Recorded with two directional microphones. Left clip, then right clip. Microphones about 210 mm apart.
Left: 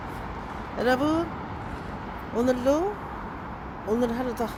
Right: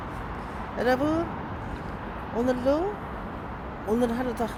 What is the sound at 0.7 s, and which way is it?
Speech, 10° left (ahead or behind).